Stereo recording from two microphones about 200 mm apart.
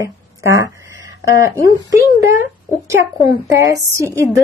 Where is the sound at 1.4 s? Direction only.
15° right (ahead or behind).